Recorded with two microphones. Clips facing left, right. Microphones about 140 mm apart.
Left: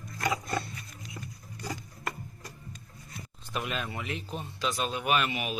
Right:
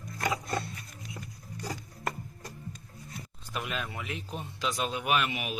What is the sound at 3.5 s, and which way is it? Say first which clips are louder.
A man's voice: left 2 dB; centre (ahead or behind).